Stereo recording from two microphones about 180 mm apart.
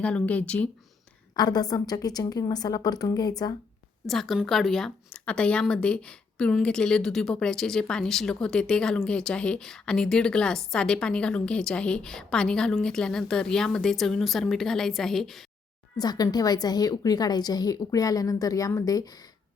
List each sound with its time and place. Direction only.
0.0 s speech: 5° left (ahead or behind)
1.4 s a woman's voice: 20° left (ahead or behind)
4.0 s speech: centre (ahead or behind)
16.0 s a woman's voice: 20° left (ahead or behind)